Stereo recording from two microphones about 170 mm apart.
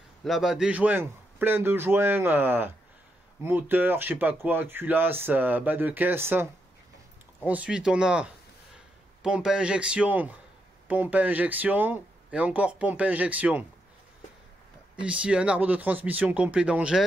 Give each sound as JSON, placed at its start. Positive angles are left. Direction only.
{"t": 0.2, "sound": "speech", "side_deg": 0}
{"t": 15.0, "sound": "speech", "side_deg": -5}